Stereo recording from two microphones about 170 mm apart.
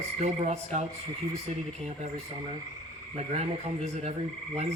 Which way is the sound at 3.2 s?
40° right (ahead or behind).